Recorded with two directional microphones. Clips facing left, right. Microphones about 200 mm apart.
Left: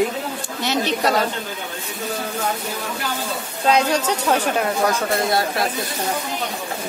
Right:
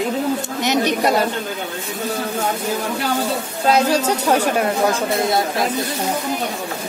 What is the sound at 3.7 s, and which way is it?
Speech, 10° right (ahead or behind).